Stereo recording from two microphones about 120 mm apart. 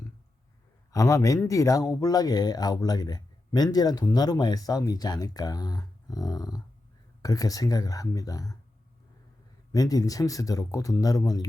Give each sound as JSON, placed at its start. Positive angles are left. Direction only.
{"t": 0.9, "sound": "speech", "side_deg": 25}
{"t": 9.7, "sound": "speech", "side_deg": 30}